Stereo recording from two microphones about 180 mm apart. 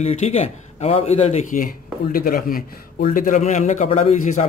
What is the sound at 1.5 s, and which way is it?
A man's voice, 50° left (ahead or behind).